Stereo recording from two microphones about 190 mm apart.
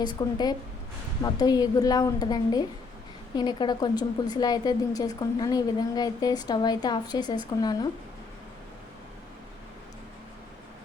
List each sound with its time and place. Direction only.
0.0 s a woman's voice: 20° left (ahead or behind)